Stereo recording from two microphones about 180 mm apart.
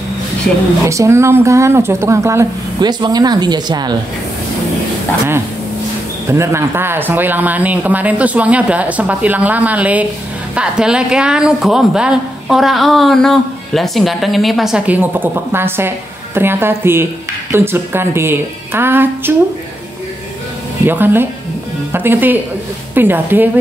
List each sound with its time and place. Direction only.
0.8 s speech: 15° right (ahead or behind)
6.2 s a woman's voice: 15° right (ahead or behind)
20.8 s speech: 10° right (ahead or behind)